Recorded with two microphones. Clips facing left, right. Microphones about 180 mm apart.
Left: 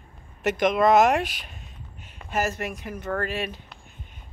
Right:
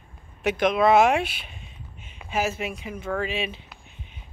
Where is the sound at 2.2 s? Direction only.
Centre (ahead or behind).